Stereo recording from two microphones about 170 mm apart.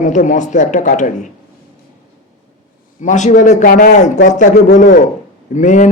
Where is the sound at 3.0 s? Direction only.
45° left (ahead or behind).